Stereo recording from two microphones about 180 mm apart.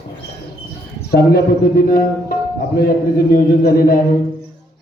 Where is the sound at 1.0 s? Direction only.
60° left (ahead or behind).